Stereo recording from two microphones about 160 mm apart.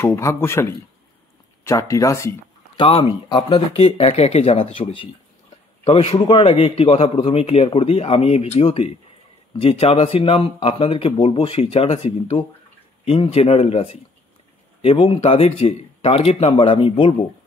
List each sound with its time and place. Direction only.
0.0 s speech: 15° left (ahead or behind)
2.8 s a man's voice: 35° left (ahead or behind)